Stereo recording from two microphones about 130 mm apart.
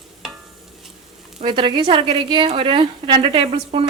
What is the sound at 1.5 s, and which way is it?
A woman's voice, 35° right (ahead or behind).